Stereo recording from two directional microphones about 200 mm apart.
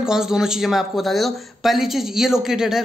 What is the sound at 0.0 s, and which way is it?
Speech, centre (ahead or behind).